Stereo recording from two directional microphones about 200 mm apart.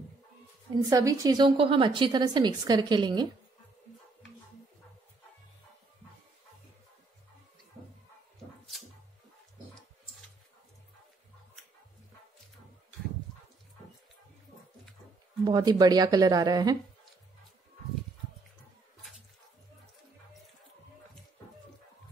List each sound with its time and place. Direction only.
0.8 s a woman's voice: 15° right (ahead or behind)
15.4 s a woman's voice: 20° right (ahead or behind)